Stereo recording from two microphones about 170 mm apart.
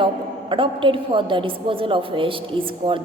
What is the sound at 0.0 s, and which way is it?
A woman's voice, 30° right (ahead or behind).